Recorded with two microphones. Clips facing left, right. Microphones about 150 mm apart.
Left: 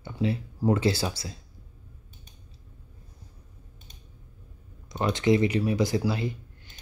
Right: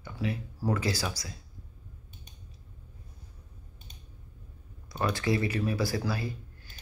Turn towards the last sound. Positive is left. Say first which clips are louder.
# left 5 dB
turn(degrees=20)  # may be behind; listen again after turning